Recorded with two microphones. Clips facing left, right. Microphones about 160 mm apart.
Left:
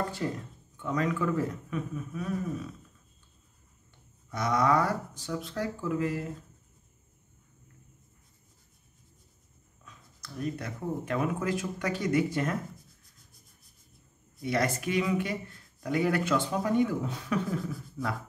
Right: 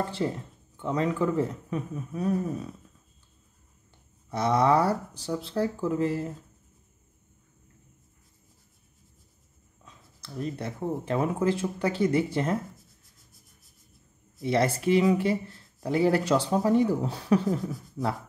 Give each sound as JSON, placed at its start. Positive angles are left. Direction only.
{"t": 0.2, "sound": "speech", "side_deg": -25}
{"t": 4.3, "sound": "speech", "side_deg": -30}
{"t": 9.8, "sound": "speech", "side_deg": -25}
{"t": 14.4, "sound": "speech", "side_deg": -30}